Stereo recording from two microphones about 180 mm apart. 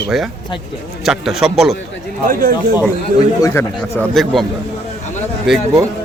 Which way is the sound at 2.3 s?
55° right (ahead or behind).